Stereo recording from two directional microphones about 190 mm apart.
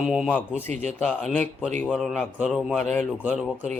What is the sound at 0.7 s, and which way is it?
Speech, 35° right (ahead or behind).